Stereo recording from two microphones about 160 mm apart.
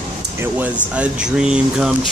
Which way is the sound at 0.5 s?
10° right (ahead or behind).